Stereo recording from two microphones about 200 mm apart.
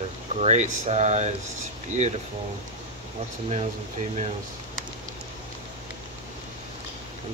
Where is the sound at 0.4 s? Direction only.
35° right (ahead or behind).